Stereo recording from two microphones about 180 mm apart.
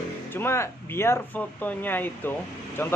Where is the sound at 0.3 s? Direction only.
10° left (ahead or behind).